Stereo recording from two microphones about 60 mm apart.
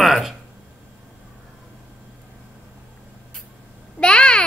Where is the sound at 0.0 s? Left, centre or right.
Centre.